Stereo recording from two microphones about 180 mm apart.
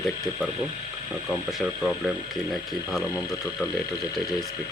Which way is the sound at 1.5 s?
Centre (ahead or behind).